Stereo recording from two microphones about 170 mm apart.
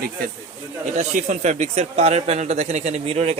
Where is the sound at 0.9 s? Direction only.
45° right (ahead or behind).